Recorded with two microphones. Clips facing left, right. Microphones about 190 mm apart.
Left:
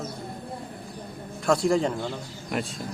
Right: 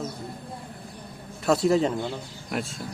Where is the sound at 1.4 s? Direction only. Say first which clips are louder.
Right 1 dB; 5° right (ahead or behind).